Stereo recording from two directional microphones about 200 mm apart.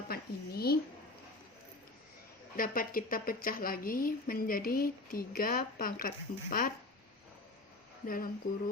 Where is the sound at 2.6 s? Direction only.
45° left (ahead or behind).